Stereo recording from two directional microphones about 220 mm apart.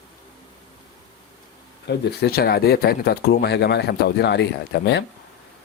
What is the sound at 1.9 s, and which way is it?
Speech, 50° left (ahead or behind).